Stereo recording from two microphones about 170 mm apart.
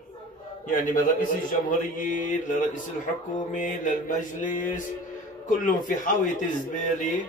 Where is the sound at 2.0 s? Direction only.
50° left (ahead or behind).